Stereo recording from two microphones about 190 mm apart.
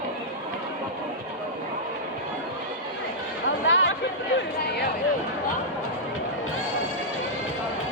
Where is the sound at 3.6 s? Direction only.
75° left (ahead or behind).